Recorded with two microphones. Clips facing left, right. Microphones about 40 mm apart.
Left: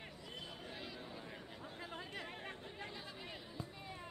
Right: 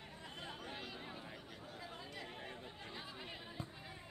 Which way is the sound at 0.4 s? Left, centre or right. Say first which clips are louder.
Right 2 dB; right.